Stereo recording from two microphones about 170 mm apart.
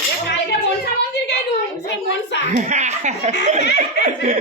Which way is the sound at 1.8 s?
90° left.